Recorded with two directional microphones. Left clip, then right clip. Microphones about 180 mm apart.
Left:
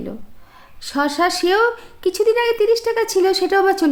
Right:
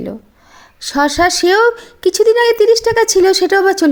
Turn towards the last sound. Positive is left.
turn(degrees=-40)  # may be behind; listen again after turning